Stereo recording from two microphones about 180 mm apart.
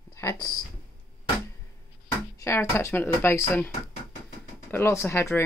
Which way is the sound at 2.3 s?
15° left (ahead or behind).